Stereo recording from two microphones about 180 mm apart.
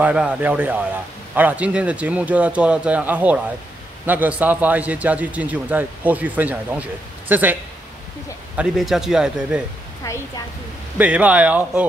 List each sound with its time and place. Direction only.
0.0 s a man's voice: 5° right (ahead or behind)
8.5 s a man's voice: centre (ahead or behind)
10.0 s a woman's voice: 15° left (ahead or behind)
11.0 s a man's voice: 10° right (ahead or behind)